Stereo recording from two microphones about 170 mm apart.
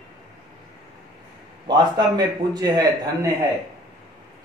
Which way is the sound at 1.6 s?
25° right (ahead or behind).